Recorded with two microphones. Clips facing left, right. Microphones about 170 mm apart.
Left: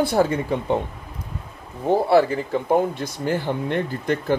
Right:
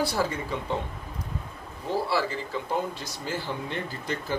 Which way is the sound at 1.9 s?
55° left (ahead or behind).